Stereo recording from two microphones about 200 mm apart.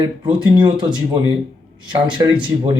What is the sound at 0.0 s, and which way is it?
Speech, 25° right (ahead or behind).